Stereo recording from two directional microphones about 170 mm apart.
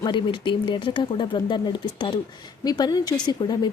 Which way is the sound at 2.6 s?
25° left (ahead or behind).